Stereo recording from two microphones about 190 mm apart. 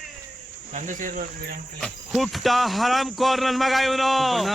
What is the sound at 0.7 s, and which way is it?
Speech, 45° right (ahead or behind).